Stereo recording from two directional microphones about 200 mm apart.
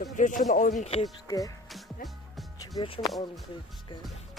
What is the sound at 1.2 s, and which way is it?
Speech, 15° left (ahead or behind).